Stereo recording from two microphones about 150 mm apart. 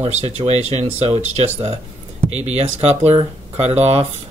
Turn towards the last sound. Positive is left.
turn(degrees=-45)  # may be behind; listen again after turning